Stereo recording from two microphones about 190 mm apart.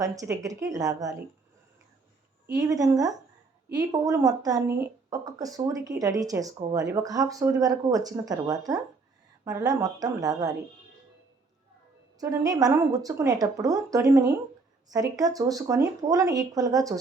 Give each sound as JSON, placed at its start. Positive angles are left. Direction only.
{"t": 0.0, "sound": "a woman's voice", "side_deg": -15}
{"t": 2.6, "sound": "a woman's voice", "side_deg": -20}
{"t": 12.2, "sound": "a woman's voice", "side_deg": -20}